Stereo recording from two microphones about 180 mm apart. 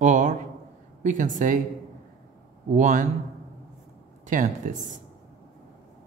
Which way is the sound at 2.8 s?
45° right (ahead or behind).